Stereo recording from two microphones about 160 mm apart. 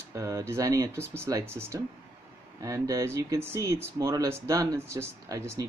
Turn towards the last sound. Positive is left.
turn(degrees=-20)  # may be behind; listen again after turning